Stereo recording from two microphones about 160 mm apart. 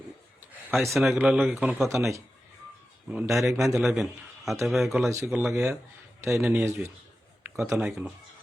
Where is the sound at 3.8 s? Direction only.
Centre (ahead or behind).